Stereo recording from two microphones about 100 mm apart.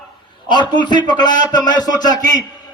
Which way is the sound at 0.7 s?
50° left (ahead or behind).